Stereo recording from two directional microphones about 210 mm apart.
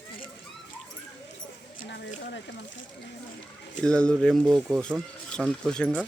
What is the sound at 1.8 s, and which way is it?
Speech, 55° left (ahead or behind).